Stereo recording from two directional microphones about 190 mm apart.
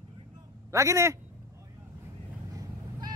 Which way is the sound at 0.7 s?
15° right (ahead or behind).